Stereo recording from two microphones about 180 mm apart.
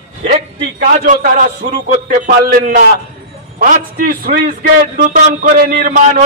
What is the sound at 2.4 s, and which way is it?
A man's voice, 50° right (ahead or behind).